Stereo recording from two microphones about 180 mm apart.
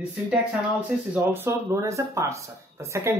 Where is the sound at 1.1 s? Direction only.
10° right (ahead or behind).